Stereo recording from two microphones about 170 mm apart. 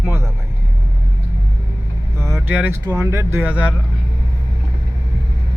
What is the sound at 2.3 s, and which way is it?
Vehicle, 5° right (ahead or behind).